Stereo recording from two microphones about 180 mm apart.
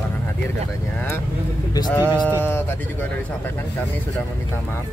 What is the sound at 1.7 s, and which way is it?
Speech, 20° left (ahead or behind).